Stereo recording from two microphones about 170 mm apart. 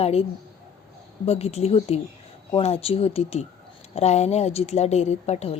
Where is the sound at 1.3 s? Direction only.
35° left (ahead or behind).